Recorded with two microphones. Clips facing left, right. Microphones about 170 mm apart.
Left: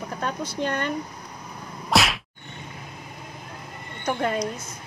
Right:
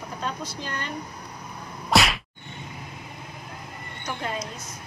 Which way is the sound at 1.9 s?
Centre (ahead or behind).